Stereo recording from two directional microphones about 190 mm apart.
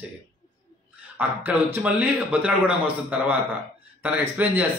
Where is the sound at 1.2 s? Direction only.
10° right (ahead or behind).